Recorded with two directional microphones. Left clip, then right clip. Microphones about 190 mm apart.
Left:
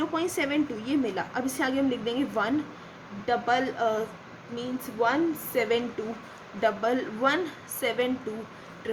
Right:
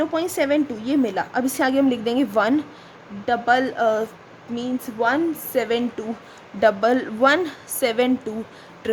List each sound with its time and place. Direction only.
0.0 s a woman's voice: 40° right (ahead or behind)